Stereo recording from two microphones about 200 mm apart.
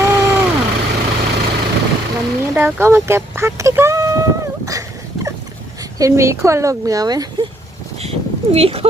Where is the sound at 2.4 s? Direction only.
10° right (ahead or behind).